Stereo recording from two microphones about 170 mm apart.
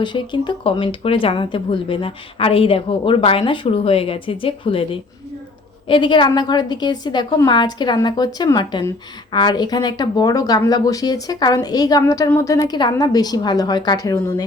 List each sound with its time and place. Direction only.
0.0 s speech: 30° left (ahead or behind)
5.9 s a woman's voice: 30° left (ahead or behind)